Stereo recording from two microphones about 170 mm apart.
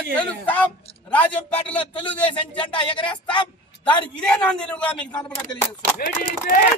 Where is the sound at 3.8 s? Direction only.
30° left (ahead or behind).